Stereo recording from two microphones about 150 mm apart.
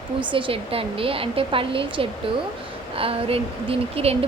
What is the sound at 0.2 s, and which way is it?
A woman's voice, 35° right (ahead or behind).